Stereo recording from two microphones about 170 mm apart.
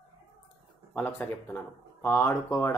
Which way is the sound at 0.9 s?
10° left (ahead or behind).